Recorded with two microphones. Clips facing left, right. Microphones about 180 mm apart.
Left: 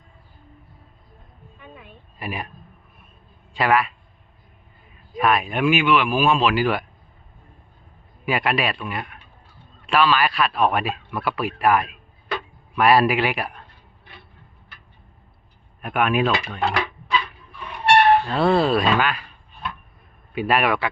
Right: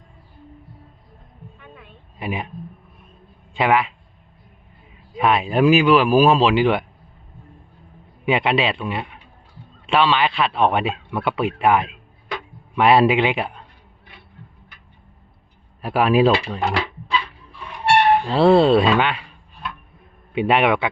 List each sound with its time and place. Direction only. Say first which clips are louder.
2.1 s a woman's voice: right 4 dB; 20° right (ahead or behind)
3.5 s speech: right 2 dB; 20° right (ahead or behind)
5.1 s speech: right 3 dB; 25° right (ahead or behind)
6.5 s a man's voice: right 4 dB; 25° right (ahead or behind)
8.2 s a man's voice: right 3 dB; 25° right (ahead or behind)
15.8 s speech: right 5 dB; 30° right (ahead or behind)
18.1 s a sound: even; 15° right (ahead or behind)
18.3 s a man's voice: right 5 dB; 30° right (ahead or behind)
20.3 s a man's voice: right 3 dB; 25° right (ahead or behind)